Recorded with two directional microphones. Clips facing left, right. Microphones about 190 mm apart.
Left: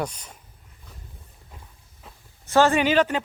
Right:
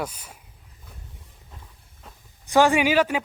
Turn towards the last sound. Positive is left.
turn(degrees=-10)  # may be behind; listen again after turning